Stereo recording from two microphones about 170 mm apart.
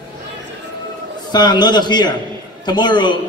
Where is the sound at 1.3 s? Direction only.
25° left (ahead or behind).